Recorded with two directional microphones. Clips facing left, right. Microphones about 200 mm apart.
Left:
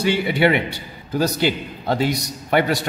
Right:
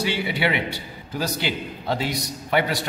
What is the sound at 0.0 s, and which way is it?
A man's voice, 50° left (ahead or behind).